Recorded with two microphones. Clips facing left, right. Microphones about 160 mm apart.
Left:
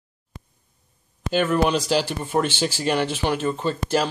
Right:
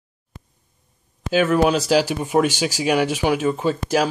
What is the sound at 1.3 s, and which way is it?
Speech, 5° right (ahead or behind).